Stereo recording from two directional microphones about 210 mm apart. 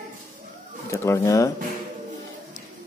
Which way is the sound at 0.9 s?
15° left (ahead or behind).